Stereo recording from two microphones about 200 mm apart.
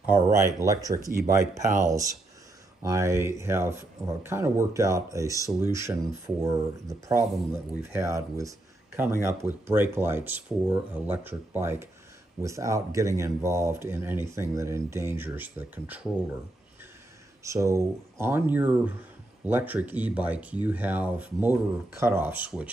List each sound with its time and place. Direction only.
0.0 s speech: 15° right (ahead or behind)
1.7 s speech: 40° right (ahead or behind)
2.8 s speech: 15° right (ahead or behind)
17.4 s speech: 15° right (ahead or behind)